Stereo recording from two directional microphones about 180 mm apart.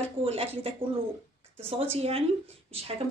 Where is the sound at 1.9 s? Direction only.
35° right (ahead or behind).